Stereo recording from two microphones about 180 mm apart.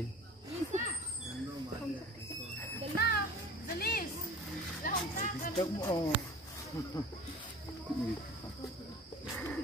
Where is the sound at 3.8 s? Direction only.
60° left (ahead or behind).